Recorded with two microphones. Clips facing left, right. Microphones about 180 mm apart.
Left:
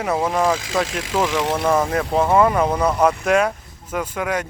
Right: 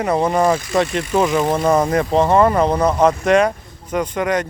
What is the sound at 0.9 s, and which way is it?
Speech, 90° left.